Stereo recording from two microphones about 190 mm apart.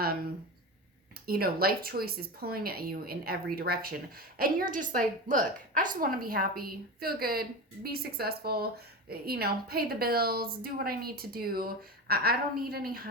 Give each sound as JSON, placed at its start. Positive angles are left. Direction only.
{"t": 1.3, "sound": "a woman's voice", "side_deg": -50}